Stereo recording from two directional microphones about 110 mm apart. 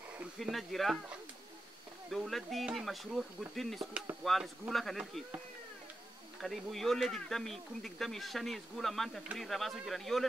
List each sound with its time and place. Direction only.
0.4 s speech: centre (ahead or behind)
2.0 s speech: centre (ahead or behind)
6.4 s speech: centre (ahead or behind)